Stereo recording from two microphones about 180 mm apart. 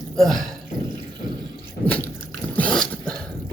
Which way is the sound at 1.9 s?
10° left (ahead or behind).